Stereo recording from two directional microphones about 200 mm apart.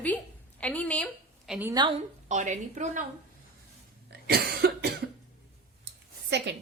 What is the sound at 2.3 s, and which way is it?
Speech, 35° right (ahead or behind).